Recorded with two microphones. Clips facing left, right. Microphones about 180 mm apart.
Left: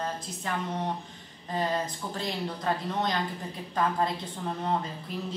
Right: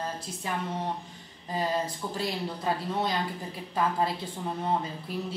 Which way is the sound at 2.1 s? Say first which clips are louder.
Even; 10° right (ahead or behind).